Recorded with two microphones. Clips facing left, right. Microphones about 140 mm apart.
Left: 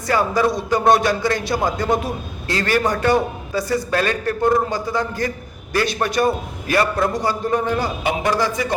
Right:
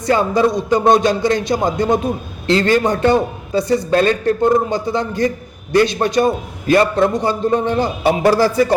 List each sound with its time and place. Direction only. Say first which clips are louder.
0.0 s a man's voice: right 4 dB; 25° right (ahead or behind)
8.0 s speech: right 8 dB; 35° right (ahead or behind)